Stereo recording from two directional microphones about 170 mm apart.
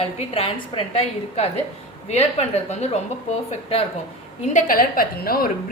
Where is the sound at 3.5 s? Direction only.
35° left (ahead or behind).